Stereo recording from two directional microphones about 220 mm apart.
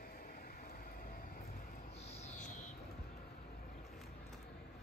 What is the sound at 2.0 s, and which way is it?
Music, 30° left (ahead or behind).